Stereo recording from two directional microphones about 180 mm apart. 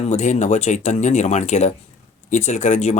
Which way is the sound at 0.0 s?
40° left (ahead or behind).